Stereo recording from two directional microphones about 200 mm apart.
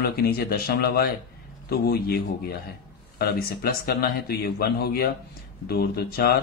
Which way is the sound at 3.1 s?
50° left (ahead or behind).